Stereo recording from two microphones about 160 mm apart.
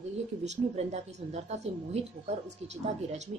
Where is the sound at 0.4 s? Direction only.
45° right (ahead or behind).